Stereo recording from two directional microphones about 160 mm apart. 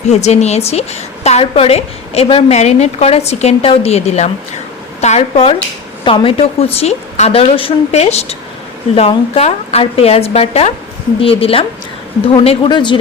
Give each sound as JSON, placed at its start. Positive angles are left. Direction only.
{"t": 0.1, "sound": "a woman's voice", "side_deg": 45}